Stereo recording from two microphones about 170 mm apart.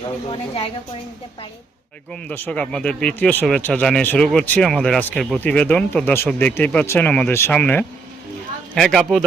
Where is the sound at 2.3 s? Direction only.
10° left (ahead or behind).